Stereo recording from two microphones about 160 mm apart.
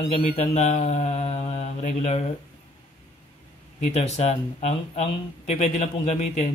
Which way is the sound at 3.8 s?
45° left (ahead or behind).